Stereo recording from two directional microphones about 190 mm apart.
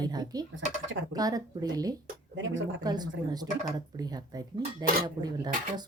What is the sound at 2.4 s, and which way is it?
Speech, 80° right.